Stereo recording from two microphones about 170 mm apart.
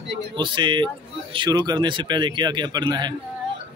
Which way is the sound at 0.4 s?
30° right (ahead or behind).